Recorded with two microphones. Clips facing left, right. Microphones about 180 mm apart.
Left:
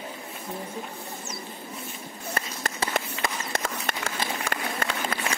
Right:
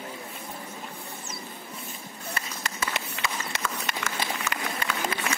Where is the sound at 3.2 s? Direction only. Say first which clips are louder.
Left 2 dB; 50° left (ahead or behind).